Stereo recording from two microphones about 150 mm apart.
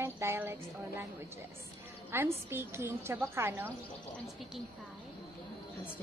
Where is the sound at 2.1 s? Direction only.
15° right (ahead or behind).